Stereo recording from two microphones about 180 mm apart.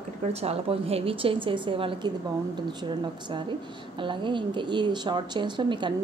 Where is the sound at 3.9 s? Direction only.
25° right (ahead or behind).